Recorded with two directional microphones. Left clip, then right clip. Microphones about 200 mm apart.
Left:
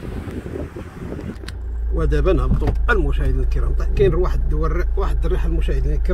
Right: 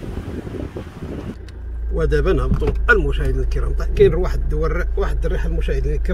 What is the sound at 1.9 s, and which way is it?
Speech, 20° right (ahead or behind).